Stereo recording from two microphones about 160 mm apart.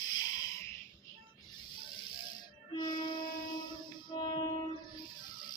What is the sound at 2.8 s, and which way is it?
Music, 25° left (ahead or behind).